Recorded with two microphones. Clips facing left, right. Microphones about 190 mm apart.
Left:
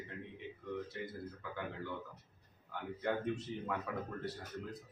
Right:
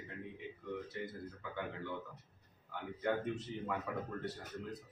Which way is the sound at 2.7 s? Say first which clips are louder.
Right 1 dB; centre (ahead or behind).